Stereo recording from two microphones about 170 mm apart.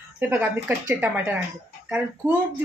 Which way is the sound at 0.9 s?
10° right (ahead or behind).